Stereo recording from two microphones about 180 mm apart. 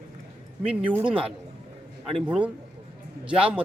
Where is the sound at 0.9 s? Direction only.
10° right (ahead or behind).